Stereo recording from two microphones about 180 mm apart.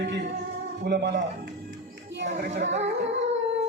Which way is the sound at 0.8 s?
65° right (ahead or behind).